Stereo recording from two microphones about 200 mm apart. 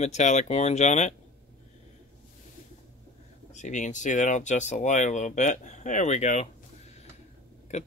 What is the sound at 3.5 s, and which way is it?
Speech, 35° left (ahead or behind).